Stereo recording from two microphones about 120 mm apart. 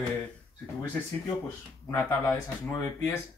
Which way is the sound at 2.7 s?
20° left (ahead or behind).